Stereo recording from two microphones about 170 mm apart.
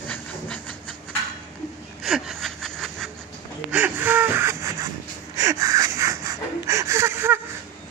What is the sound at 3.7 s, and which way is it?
Gasp, 10° right (ahead or behind).